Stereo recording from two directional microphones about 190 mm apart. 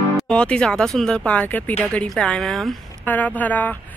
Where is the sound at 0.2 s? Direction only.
5° left (ahead or behind).